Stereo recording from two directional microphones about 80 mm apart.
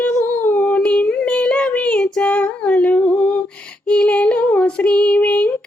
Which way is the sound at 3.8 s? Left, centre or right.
Centre.